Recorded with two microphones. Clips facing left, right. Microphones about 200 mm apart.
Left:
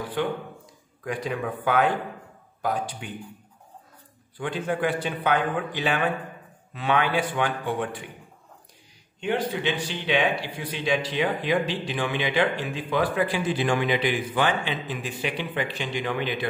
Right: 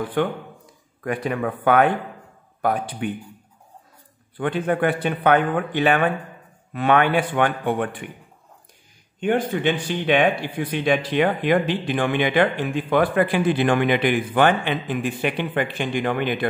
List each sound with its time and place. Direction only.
0.2 s speech: 55° right (ahead or behind)
4.4 s speech: 60° right (ahead or behind)
9.2 s speech: 50° right (ahead or behind)